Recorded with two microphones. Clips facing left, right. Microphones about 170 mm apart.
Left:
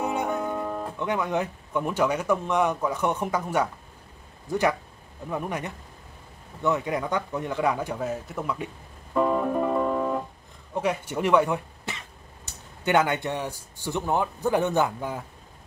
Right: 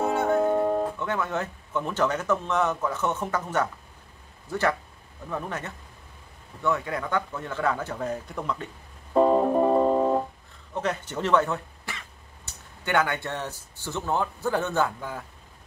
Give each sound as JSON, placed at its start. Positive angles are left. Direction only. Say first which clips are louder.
{"t": 0.0, "sound": "music", "louder": "right 2 dB", "side_deg": 15}
{"t": 0.3, "sound": "music", "louder": "right 6 dB", "side_deg": -35}
{"t": 0.9, "sound": "speech", "louder": "left 2 dB", "side_deg": 15}
{"t": 9.1, "sound": "music", "louder": "right 4 dB", "side_deg": -35}
{"t": 10.7, "sound": "speech", "louder": "left 2 dB", "side_deg": 10}